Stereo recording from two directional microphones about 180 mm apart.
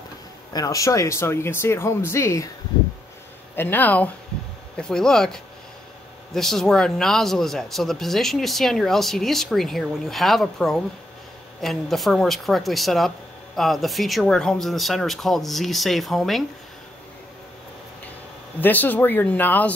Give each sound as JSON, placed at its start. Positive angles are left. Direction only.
{"t": 0.5, "sound": "speech", "side_deg": 20}
{"t": 3.5, "sound": "speech", "side_deg": 10}
{"t": 18.6, "sound": "speech", "side_deg": 10}